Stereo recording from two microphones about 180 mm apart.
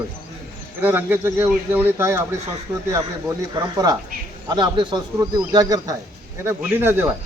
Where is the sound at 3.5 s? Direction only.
20° right (ahead or behind).